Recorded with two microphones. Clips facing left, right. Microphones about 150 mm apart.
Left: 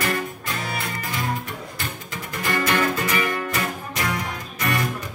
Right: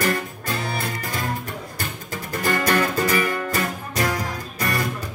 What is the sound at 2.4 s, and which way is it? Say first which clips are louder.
Music: right 1 dB; 35° right (ahead or behind).